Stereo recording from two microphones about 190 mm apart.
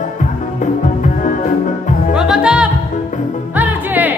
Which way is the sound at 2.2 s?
5° right (ahead or behind).